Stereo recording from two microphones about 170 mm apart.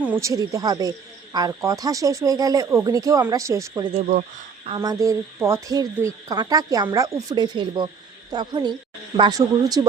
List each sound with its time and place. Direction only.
0.0 s speech: 15° right (ahead or behind)
3.9 s speech: 45° right (ahead or behind)
4.7 s speech: 20° right (ahead or behind)